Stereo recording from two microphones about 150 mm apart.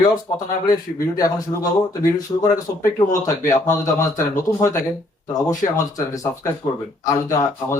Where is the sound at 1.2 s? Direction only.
25° left (ahead or behind).